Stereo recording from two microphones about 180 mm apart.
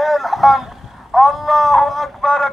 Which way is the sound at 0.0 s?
Centre (ahead or behind).